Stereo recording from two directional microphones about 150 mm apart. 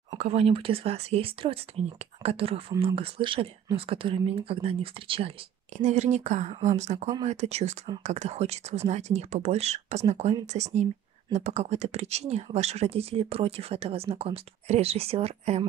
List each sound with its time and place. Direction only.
0.2 s speech: 40° right (ahead or behind)
5.8 s speech: 50° right (ahead or behind)